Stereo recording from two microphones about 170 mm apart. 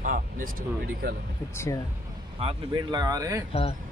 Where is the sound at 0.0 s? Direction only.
55° right (ahead or behind).